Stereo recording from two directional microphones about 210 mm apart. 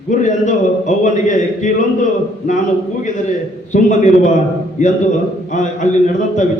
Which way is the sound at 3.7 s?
35° left (ahead or behind).